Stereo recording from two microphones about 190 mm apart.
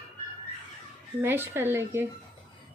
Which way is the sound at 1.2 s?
10° right (ahead or behind).